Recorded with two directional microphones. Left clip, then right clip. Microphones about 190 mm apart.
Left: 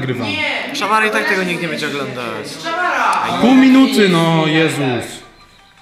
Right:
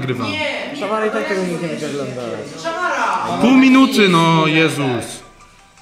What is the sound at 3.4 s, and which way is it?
A man's voice, 15° left (ahead or behind).